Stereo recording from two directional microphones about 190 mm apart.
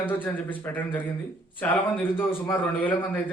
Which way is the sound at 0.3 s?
10° left (ahead or behind).